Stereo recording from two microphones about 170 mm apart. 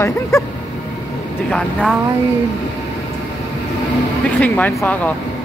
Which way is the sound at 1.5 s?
5° left (ahead or behind).